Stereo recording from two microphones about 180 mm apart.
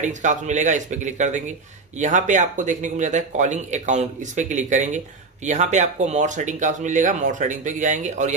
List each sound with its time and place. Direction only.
0.0 s speech: 40° right (ahead or behind)